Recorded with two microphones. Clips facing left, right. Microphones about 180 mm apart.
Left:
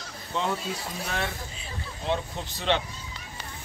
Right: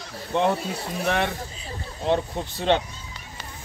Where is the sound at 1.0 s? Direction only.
65° right (ahead or behind).